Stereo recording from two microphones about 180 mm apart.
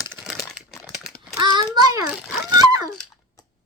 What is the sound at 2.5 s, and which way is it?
Dog, 20° right (ahead or behind).